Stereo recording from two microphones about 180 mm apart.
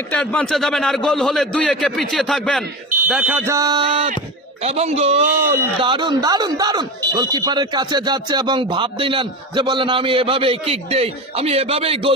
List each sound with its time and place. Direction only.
0.2 s a man's voice: 5° left (ahead or behind)
3.1 s a sound: 5° right (ahead or behind); by 4.1 s 25° right (ahead or behind)
4.6 s a man's voice: 35° right (ahead or behind)